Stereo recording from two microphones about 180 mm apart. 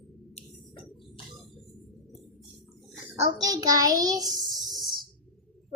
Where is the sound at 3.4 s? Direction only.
20° right (ahead or behind).